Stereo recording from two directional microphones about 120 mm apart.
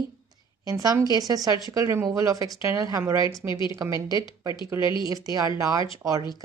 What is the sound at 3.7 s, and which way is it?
Speech, 25° right (ahead or behind).